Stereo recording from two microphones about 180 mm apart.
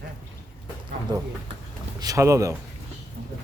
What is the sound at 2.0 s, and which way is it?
Speech, 20° right (ahead or behind).